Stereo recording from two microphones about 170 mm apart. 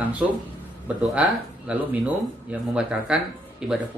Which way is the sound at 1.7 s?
5° right (ahead or behind).